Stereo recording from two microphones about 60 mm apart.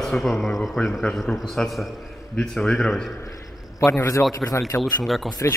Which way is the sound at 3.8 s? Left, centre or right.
Left.